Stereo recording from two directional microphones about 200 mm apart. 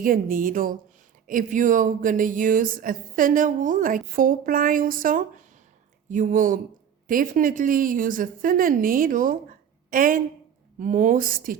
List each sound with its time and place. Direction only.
0.0 s speech: 45° right (ahead or behind)